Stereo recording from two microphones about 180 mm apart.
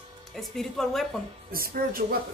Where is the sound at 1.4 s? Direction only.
55° right (ahead or behind).